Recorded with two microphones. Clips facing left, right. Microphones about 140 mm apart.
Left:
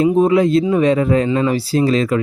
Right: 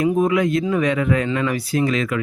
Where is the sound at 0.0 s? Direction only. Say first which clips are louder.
Left 5 dB; 30° left (ahead or behind).